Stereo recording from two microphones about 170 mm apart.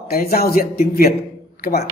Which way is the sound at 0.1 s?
60° left (ahead or behind).